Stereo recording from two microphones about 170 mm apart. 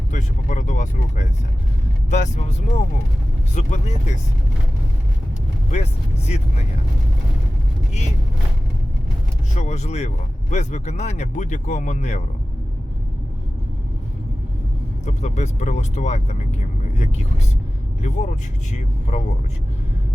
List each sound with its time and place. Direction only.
0.1 s speech: 50° left (ahead or behind)
5.7 s speech: 40° left (ahead or behind)
9.6 s speech: 45° left (ahead or behind)
15.0 s speech: 45° left (ahead or behind)